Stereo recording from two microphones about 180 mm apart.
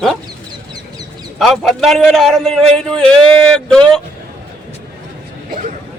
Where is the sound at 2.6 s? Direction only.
35° right (ahead or behind).